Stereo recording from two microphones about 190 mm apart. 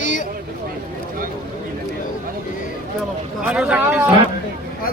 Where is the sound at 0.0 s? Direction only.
40° left (ahead or behind).